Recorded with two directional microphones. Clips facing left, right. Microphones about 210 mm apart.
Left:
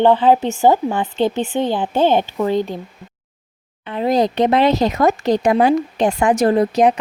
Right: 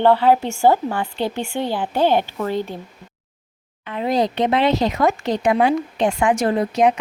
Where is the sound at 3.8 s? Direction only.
35° left (ahead or behind).